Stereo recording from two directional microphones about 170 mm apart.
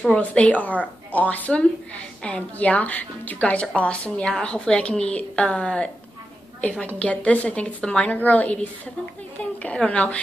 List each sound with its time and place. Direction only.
0.0 s a woman's voice: 5° left (ahead or behind)